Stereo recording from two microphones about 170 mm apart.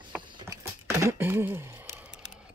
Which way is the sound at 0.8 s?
15° right (ahead or behind).